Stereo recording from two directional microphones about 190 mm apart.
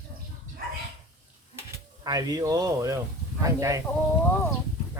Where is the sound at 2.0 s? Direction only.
20° right (ahead or behind).